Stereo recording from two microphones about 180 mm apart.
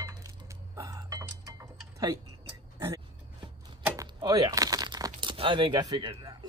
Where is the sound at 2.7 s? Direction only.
15° right (ahead or behind).